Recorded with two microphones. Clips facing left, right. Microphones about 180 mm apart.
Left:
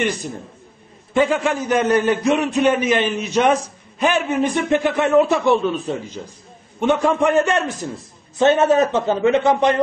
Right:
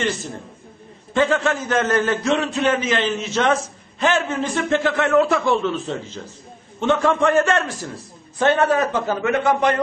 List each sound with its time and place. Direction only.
0.0 s a man's voice: 15° left (ahead or behind)